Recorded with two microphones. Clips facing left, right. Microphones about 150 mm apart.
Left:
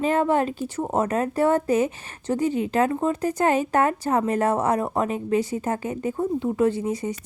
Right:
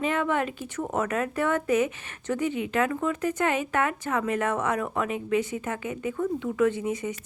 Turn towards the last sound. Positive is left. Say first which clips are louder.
# left 2 dB
turn(degrees=35)  # may be behind; listen again after turning